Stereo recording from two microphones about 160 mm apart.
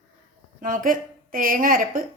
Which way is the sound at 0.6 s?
55° right (ahead or behind).